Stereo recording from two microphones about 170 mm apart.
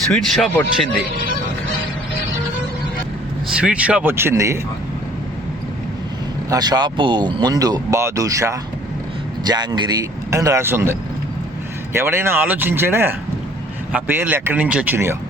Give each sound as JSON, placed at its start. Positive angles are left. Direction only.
{"t": 0.1, "sound": "speech", "side_deg": 5}
{"t": 3.6, "sound": "speech", "side_deg": -5}
{"t": 6.5, "sound": "speech", "side_deg": -25}
{"t": 11.9, "sound": "speech", "side_deg": -15}